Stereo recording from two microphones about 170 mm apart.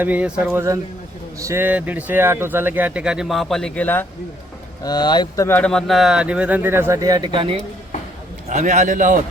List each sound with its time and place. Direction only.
0.0 s speech: 10° right (ahead or behind); by 4.0 s 10° left (ahead or behind)
4.8 s speech: 25° left (ahead or behind)
5.5 s speech: 5° left (ahead or behind); by 7.3 s 20° right (ahead or behind)
8.4 s a man's voice: 45° right (ahead or behind)